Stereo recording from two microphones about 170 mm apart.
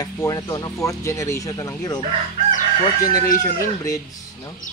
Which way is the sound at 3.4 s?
20° left (ahead or behind).